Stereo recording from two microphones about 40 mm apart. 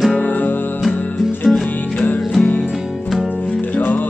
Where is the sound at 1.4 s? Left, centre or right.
Centre.